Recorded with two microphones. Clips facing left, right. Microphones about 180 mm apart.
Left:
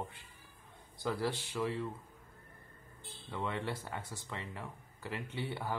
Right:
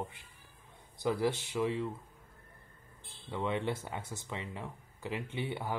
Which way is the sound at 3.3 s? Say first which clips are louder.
Right 4 dB; 20° right (ahead or behind).